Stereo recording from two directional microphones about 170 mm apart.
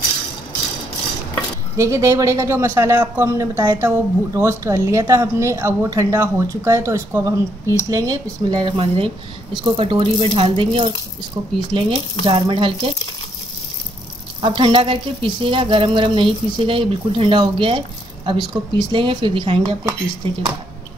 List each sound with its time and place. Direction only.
1.8 s speech: 20° right (ahead or behind)
14.4 s speech: 30° right (ahead or behind)